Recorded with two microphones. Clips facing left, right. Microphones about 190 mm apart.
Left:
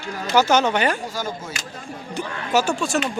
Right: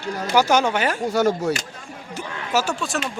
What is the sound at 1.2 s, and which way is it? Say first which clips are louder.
Speech: right 10 dB; 70° right (ahead or behind).